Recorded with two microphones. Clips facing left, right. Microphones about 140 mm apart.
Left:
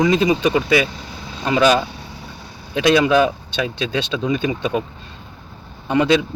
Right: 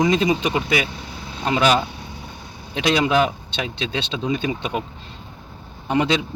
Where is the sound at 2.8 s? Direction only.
20° right (ahead or behind).